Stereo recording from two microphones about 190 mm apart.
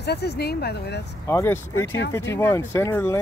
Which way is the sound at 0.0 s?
60° left (ahead or behind).